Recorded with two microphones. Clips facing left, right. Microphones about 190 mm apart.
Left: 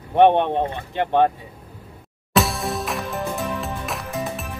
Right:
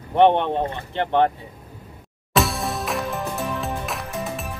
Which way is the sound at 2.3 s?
Centre (ahead or behind).